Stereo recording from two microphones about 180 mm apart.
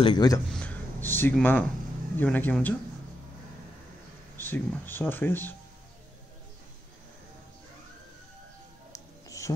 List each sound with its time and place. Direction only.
0.0 s speech: 25° left (ahead or behind)
0.5 s speech: 5° left (ahead or behind)
4.4 s speech: 10° left (ahead or behind)
8.9 s music: 20° left (ahead or behind)